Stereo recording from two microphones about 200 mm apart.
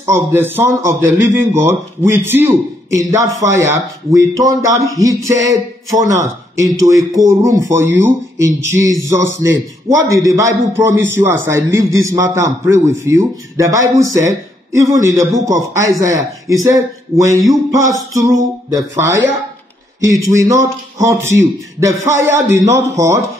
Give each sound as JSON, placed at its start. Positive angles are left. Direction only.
{"t": 0.0, "sound": "speech", "side_deg": -10}
{"t": 20.4, "sound": "speech", "side_deg": -15}